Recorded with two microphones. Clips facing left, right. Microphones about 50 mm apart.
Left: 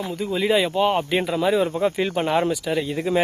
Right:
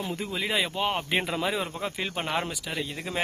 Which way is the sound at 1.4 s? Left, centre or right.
Centre.